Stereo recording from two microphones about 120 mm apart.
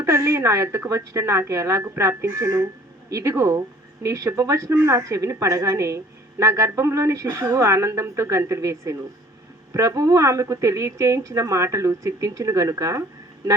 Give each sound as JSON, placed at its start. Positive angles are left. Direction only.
{"t": 0.0, "sound": "speech", "side_deg": -20}